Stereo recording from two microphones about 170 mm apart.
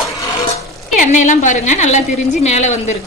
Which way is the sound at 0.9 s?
45° left (ahead or behind).